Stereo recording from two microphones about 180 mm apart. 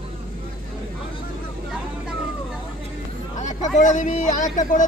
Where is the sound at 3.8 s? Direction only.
45° left (ahead or behind).